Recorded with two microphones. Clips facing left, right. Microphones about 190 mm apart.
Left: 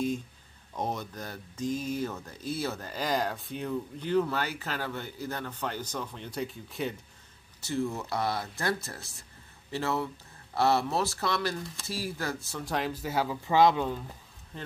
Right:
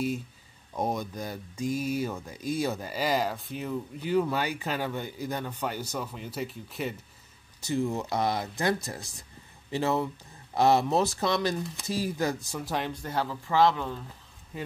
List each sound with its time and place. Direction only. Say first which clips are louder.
0.7 s speech: right 3 dB; 10° right (ahead or behind)
7.6 s speech: right 3 dB; 15° right (ahead or behind)
12.6 s speech: left 1 dB; centre (ahead or behind)
14.5 s speech: right 4 dB; 10° right (ahead or behind)